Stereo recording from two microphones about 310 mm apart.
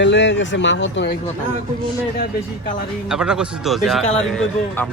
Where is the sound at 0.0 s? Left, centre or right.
Left.